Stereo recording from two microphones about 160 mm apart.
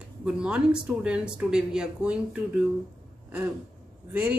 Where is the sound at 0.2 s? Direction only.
5° right (ahead or behind).